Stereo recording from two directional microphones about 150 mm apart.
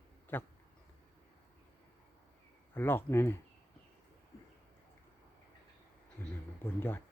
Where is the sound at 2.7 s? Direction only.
15° left (ahead or behind).